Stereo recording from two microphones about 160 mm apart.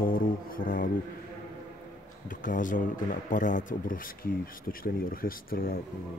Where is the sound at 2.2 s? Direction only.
55° left (ahead or behind).